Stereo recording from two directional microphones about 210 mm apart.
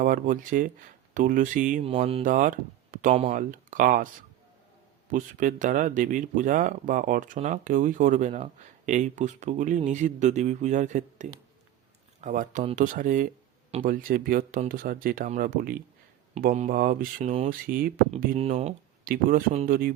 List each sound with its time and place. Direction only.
0.0 s speech: 40° right (ahead or behind)
1.9 s mantra: 25° right (ahead or behind)
2.2 s speech: 40° right (ahead or behind)
5.1 s speech: 40° right (ahead or behind)
18.3 s speech: 30° right (ahead or behind)
19.1 s speech: 40° right (ahead or behind)